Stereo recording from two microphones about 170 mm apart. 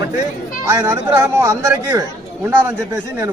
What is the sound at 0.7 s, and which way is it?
A man's voice, 15° right (ahead or behind).